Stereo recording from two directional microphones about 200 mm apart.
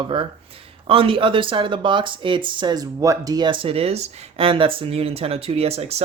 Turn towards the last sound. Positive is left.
turn(degrees=-30)  # may be behind; listen again after turning